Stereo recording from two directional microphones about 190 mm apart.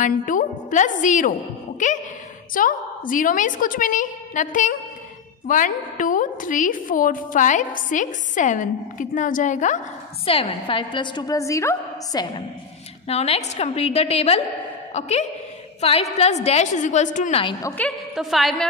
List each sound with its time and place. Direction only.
0.0 s a woman's voice: 45° left (ahead or behind)
10.2 s a woman's voice: 30° left (ahead or behind)
13.0 s a woman's voice: 30° left (ahead or behind)
17.4 s a woman's voice: 20° left (ahead or behind)
17.8 s a woman's voice: centre (ahead or behind)